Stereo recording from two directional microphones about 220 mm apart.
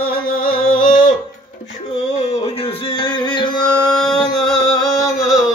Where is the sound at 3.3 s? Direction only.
20° left (ahead or behind).